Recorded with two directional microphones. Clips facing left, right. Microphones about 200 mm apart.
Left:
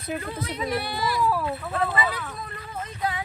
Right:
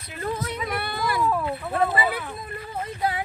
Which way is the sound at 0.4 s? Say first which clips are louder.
Left 1 dB; 55° right (ahead or behind).